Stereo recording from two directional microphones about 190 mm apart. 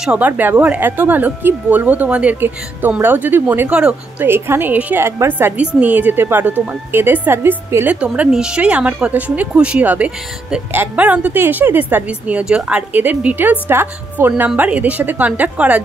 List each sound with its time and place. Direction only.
0.0 s speech: 5° right (ahead or behind)